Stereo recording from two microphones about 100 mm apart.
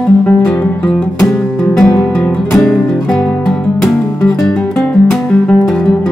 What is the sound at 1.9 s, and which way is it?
Music, 20° left (ahead or behind).